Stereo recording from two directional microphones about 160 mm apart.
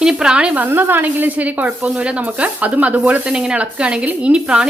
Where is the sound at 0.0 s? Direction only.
5° right (ahead or behind).